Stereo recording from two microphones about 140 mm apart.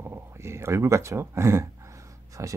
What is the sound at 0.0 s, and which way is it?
Speech, 20° right (ahead or behind).